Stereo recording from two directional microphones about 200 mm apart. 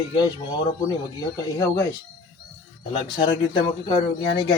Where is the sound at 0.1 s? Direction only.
20° left (ahead or behind).